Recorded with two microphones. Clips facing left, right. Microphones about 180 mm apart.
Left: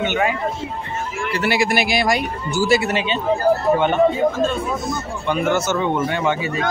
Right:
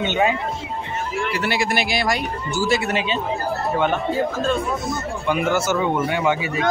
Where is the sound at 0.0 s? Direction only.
20° right (ahead or behind).